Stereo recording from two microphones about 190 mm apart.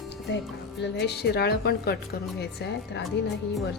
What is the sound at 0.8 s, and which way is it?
A woman's voice, 60° left (ahead or behind).